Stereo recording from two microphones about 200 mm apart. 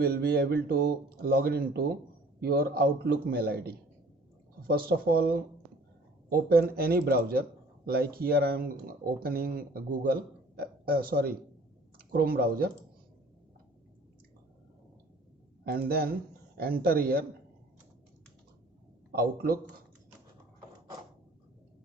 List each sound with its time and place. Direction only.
0.0 s a man's voice: 50° right (ahead or behind)
15.6 s speech: 50° right (ahead or behind)
19.1 s speech: 50° right (ahead or behind)